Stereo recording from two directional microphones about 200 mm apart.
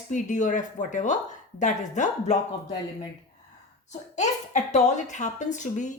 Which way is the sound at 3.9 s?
35° left (ahead or behind).